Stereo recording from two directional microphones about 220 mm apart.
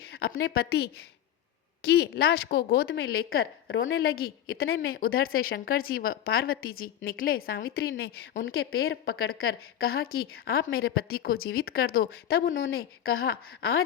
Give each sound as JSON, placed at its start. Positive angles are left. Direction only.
{"t": 0.1, "sound": "a woman's voice", "side_deg": 55}
{"t": 2.8, "sound": "a woman's voice", "side_deg": 60}
{"t": 4.2, "sound": "a woman's voice", "side_deg": 45}
{"t": 8.9, "sound": "a woman's voice", "side_deg": 65}
{"t": 9.7, "sound": "a woman's voice", "side_deg": 45}
{"t": 12.5, "sound": "a woman's voice", "side_deg": 60}